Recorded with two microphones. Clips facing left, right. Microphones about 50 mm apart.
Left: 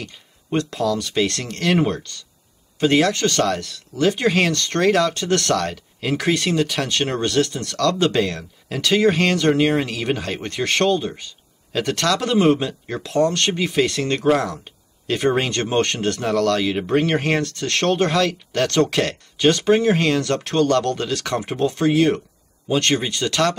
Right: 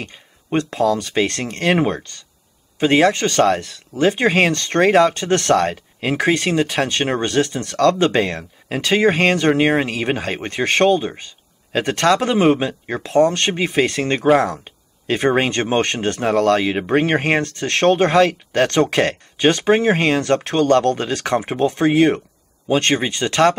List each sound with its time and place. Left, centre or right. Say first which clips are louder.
0.0 s speech: right 2 dB; right